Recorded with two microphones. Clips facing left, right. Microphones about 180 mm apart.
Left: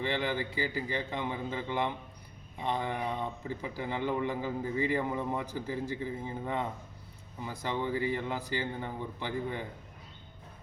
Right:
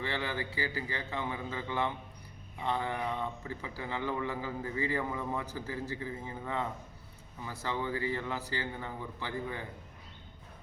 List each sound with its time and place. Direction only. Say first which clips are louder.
0.0 s speech: left 4 dB; 15° left (ahead or behind)